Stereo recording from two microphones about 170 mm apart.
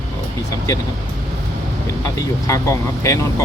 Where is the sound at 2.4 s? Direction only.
15° left (ahead or behind).